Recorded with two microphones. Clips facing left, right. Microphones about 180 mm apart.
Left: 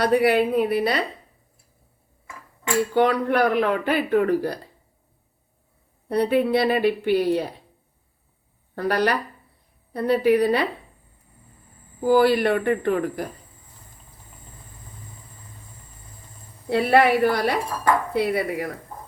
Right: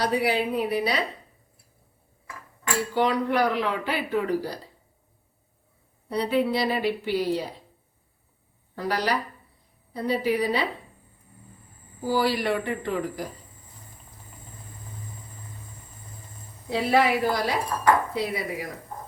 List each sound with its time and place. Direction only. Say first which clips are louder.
0.0 s speech: left 6 dB; 55° left (ahead or behind)
2.9 s speech: left 3 dB; 55° left (ahead or behind)
6.1 s speech: left 4 dB; 55° left (ahead or behind)
8.7 s speech: left 4 dB; 60° left (ahead or behind)
12.0 s speech: left 7 dB; 55° left (ahead or behind)
16.6 s speech: left 4 dB; 60° left (ahead or behind)